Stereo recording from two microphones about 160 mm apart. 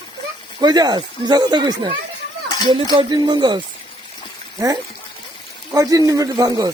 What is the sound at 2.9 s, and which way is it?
Speech, 25° right (ahead or behind).